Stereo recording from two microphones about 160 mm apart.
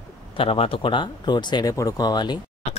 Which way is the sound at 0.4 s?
35° left (ahead or behind).